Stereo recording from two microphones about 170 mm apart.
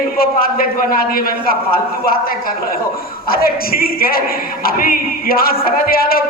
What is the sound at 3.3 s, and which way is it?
A man's voice, 60° left (ahead or behind).